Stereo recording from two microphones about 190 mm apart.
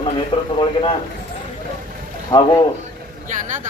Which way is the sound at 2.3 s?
25° left (ahead or behind).